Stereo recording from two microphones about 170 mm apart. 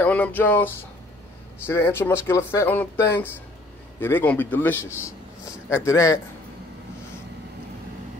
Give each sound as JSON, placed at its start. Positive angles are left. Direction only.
{"t": 0.0, "sound": "speech", "side_deg": 10}
{"t": 1.7, "sound": "speech", "side_deg": 15}
{"t": 4.9, "sound": "a sound", "side_deg": 15}
{"t": 5.9, "sound": "a man's voice", "side_deg": 20}